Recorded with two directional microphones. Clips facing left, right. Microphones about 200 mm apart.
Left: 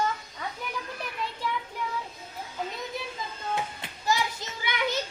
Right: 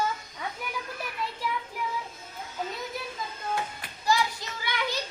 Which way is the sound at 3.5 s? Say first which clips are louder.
Left 1 dB; 20° left (ahead or behind).